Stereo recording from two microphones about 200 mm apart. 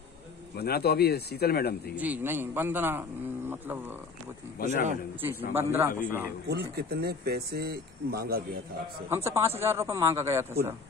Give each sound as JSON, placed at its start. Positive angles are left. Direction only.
{"t": 0.6, "sound": "speech", "side_deg": 50}
{"t": 2.0, "sound": "speech", "side_deg": -10}
{"t": 4.6, "sound": "speech", "side_deg": 45}
{"t": 5.5, "sound": "speech", "side_deg": -10}
{"t": 6.4, "sound": "speech", "side_deg": -50}
{"t": 9.1, "sound": "speech", "side_deg": -15}